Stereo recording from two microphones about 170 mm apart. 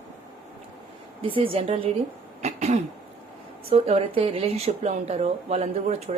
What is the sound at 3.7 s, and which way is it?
Speech, 35° right (ahead or behind).